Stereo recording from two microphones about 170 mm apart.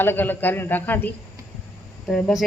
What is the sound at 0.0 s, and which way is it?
Speech, 10° left (ahead or behind).